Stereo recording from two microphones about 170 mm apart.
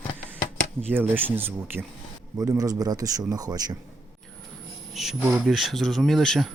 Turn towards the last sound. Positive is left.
turn(degrees=0)  # may be behind; listen again after turning